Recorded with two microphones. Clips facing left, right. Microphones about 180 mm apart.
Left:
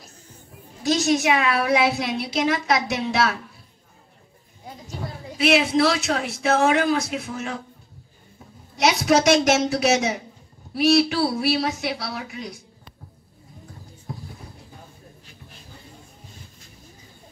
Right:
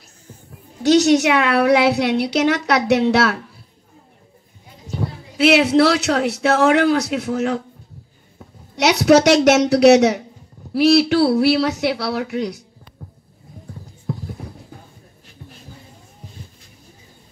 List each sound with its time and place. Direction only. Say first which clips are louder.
0.9 s a woman's voice: right 6 dB; 70° right (ahead or behind)
5.4 s a woman's voice: right 5 dB; 70° right (ahead or behind)
8.7 s a woman's voice: right 6 dB; 70° right (ahead or behind)